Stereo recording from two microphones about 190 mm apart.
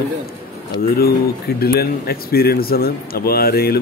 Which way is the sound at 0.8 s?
55° left (ahead or behind).